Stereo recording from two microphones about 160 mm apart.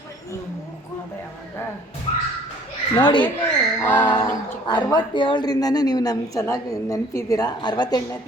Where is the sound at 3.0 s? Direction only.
30° left (ahead or behind).